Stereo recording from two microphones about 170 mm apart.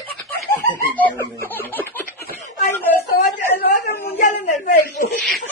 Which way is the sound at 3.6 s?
70° left (ahead or behind).